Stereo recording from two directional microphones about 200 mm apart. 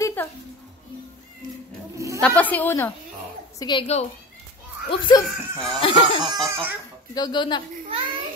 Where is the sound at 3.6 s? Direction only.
25° left (ahead or behind).